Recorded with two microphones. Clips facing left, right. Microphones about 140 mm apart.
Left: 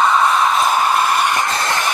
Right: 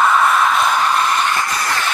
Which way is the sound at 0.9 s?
10° left (ahead or behind).